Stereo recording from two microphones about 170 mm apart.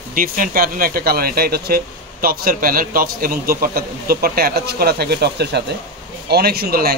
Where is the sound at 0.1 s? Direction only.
55° right (ahead or behind).